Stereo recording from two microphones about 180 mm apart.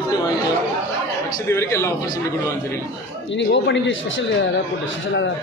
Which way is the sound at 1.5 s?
15° left (ahead or behind).